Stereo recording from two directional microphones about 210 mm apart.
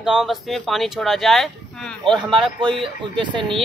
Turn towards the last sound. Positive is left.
turn(degrees=-20)  # may be behind; listen again after turning